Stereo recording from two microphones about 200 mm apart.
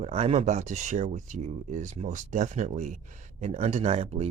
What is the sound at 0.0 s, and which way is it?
Speech, 30° right (ahead or behind).